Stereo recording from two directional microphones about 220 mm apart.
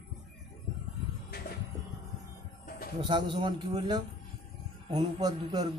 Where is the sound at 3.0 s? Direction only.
20° right (ahead or behind).